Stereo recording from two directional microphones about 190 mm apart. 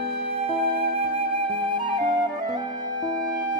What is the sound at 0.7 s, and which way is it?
Flute, 30° right (ahead or behind).